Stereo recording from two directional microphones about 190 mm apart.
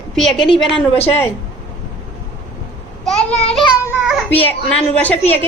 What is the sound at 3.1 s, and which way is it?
Child singing, 35° left (ahead or behind).